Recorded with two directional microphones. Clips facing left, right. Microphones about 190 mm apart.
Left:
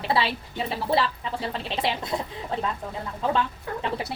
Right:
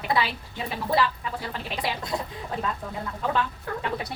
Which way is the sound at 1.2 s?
25° left (ahead or behind).